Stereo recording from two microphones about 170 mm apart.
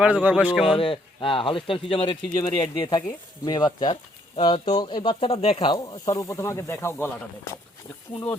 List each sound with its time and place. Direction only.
0.0 s a man's voice: 10° right (ahead or behind)
0.7 s speech: 30° left (ahead or behind)
5.7 s speech: 25° left (ahead or behind)